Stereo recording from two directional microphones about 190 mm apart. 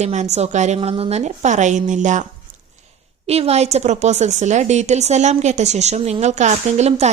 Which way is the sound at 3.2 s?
35° right (ahead or behind).